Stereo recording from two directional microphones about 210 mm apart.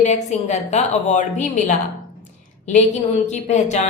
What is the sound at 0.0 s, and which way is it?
A woman's voice, 35° left (ahead or behind).